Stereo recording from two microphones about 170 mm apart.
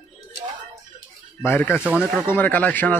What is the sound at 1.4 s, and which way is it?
Speech, 10° left (ahead or behind).